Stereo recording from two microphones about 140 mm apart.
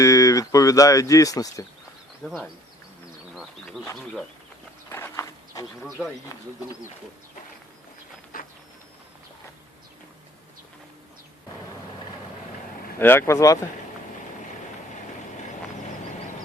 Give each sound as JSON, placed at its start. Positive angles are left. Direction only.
{"t": 0.0, "sound": "speech", "side_deg": 25}
{"t": 2.2, "sound": "speech", "side_deg": 0}
{"t": 4.9, "sound": "a sound", "side_deg": 15}
{"t": 13.0, "sound": "speech", "side_deg": 15}